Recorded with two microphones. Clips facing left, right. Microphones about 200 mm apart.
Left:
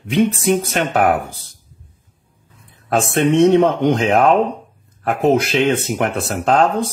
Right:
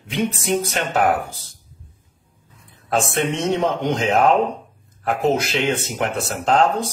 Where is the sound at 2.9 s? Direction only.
60° left (ahead or behind).